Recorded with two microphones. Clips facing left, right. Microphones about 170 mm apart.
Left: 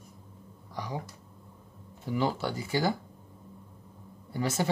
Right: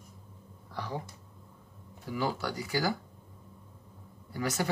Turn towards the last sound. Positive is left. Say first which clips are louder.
# left 2 dB
turn(degrees=25)  # may be behind; listen again after turning